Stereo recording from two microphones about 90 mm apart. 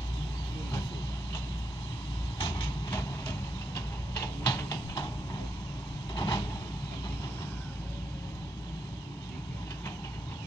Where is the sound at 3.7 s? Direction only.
45° left (ahead or behind).